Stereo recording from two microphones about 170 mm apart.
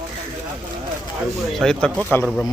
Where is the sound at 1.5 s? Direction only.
5° left (ahead or behind).